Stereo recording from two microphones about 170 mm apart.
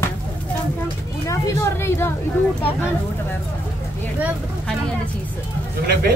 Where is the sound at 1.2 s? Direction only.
15° left (ahead or behind).